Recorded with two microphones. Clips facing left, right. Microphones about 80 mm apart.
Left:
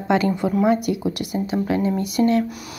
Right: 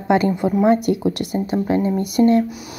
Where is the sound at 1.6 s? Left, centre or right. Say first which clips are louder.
Right 2 dB; right.